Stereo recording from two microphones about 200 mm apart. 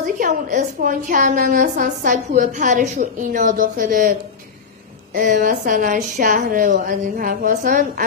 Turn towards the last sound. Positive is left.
turn(degrees=-40)  # may be behind; listen again after turning